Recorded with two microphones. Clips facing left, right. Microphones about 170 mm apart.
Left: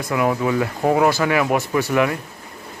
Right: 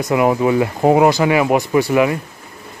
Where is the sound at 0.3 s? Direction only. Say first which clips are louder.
Right 5 dB; 25° right (ahead or behind).